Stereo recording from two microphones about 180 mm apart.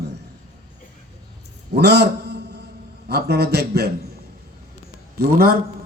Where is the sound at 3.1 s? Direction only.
65° right (ahead or behind).